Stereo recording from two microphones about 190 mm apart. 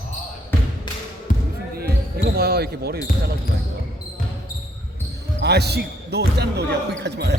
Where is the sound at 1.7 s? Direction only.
55° right (ahead or behind).